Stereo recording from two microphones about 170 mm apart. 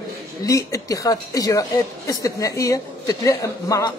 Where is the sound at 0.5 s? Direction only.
20° left (ahead or behind).